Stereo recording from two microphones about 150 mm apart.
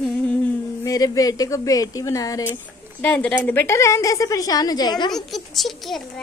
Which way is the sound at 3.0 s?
10° left (ahead or behind).